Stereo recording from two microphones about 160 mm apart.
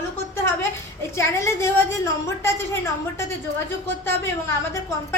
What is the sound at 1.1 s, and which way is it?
Speech, 15° left (ahead or behind).